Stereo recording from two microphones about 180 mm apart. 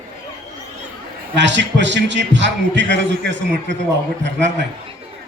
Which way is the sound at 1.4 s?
80° right.